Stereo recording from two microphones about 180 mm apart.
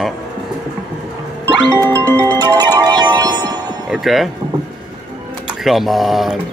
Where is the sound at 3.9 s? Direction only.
Centre (ahead or behind).